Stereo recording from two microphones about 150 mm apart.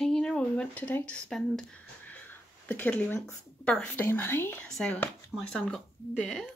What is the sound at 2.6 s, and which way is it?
Speech, 10° left (ahead or behind).